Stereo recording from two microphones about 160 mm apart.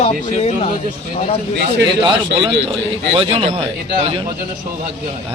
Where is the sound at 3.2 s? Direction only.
40° right (ahead or behind).